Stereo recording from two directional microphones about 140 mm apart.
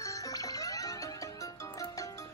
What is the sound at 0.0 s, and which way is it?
Music, 25° left (ahead or behind).